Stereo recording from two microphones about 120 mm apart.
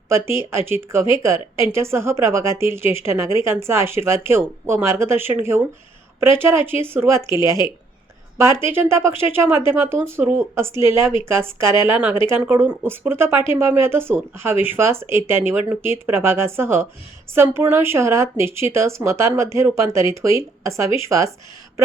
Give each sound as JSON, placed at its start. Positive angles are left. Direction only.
{"t": 0.1, "sound": "a woman's voice", "side_deg": -20}